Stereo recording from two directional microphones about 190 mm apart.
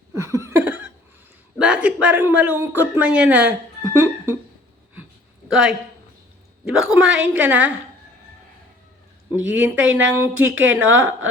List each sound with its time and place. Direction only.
0.1 s a sound: 15° right (ahead or behind)
1.5 s a man's voice: 5° right (ahead or behind)
5.5 s a woman's voice: centre (ahead or behind)
9.6 s a man's voice: 5° right (ahead or behind)
10.5 s speech: 90° right